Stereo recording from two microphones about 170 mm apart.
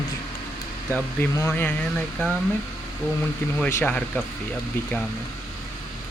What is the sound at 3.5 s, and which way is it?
Speech, 10° left (ahead or behind).